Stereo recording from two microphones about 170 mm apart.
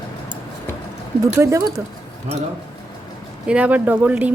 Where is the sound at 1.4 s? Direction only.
20° right (ahead or behind).